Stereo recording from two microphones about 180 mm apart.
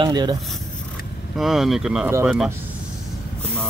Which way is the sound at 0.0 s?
25° right (ahead or behind).